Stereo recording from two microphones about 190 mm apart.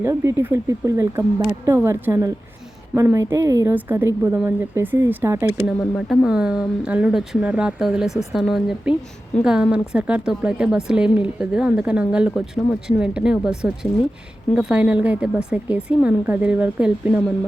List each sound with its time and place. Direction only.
0.0 s speech: 15° right (ahead or behind)
5.5 s speech: centre (ahead or behind)